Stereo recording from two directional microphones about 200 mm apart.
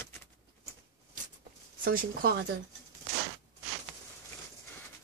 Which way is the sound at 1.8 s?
50° right (ahead or behind).